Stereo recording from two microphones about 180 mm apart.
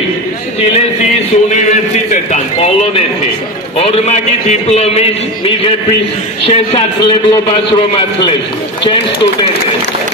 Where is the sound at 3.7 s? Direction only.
35° left (ahead or behind).